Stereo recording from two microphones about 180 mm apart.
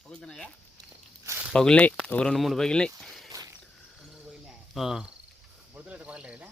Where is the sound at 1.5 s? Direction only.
5° left (ahead or behind).